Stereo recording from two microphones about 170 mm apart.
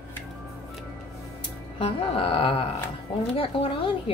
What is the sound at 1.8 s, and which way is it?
Speech, 35° left (ahead or behind).